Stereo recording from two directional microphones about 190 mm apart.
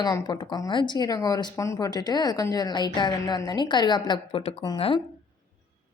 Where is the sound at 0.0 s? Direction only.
20° left (ahead or behind).